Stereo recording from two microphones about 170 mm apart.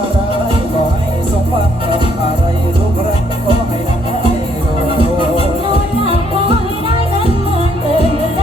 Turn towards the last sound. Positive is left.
turn(degrees=-35)  # may be behind; listen again after turning